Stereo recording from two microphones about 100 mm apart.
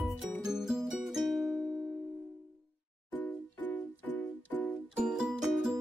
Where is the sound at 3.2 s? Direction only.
15° left (ahead or behind).